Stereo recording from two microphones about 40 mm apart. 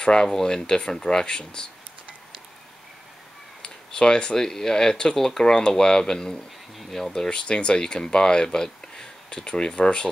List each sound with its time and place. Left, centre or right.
0.0 s speech: left
3.6 s speech: left